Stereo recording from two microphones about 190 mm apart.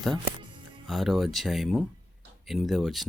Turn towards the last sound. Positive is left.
turn(degrees=0)  # may be behind; listen again after turning